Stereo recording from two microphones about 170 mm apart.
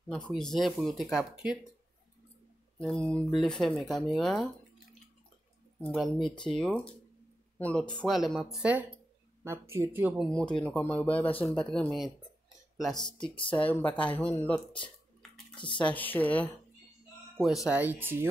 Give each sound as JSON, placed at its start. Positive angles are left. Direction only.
{"t": 0.3, "sound": "speech", "side_deg": 0}
{"t": 2.8, "sound": "speech", "side_deg": 5}
{"t": 5.8, "sound": "speech", "side_deg": 5}
{"t": 10.2, "sound": "speech", "side_deg": 5}
{"t": 15.5, "sound": "speech", "side_deg": 30}
{"t": 15.9, "sound": "speech", "side_deg": 10}
{"t": 17.6, "sound": "speech", "side_deg": -10}